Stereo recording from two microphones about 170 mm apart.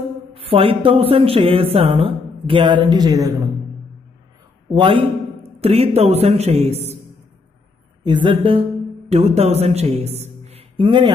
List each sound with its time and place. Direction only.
0.3 s a woman's voice: 35° right (ahead or behind)
4.6 s a man's voice: 30° right (ahead or behind)
8.0 s a woman's voice: 25° right (ahead or behind)